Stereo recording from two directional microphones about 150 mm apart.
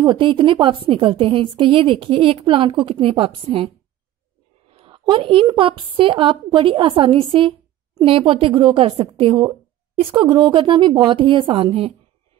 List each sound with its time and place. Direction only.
0.0 s a woman's voice: 30° right (ahead or behind)